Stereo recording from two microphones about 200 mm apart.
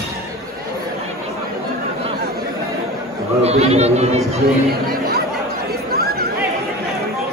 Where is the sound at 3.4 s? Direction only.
30° right (ahead or behind).